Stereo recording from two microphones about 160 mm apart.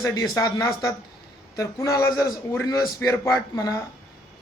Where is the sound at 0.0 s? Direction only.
20° left (ahead or behind).